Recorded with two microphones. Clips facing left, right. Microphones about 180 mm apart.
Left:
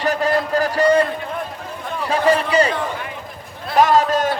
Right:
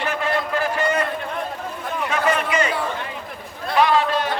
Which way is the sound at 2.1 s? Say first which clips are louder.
Left 5 dB; 35° left (ahead or behind).